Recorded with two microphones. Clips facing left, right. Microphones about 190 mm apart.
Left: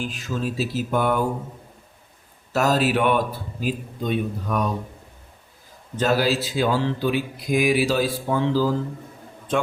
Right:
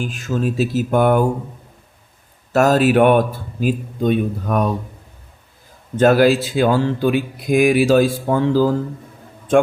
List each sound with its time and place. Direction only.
0.0 s speech: 50° right (ahead or behind)
2.5 s speech: 50° right (ahead or behind)
6.0 s speech: 55° right (ahead or behind)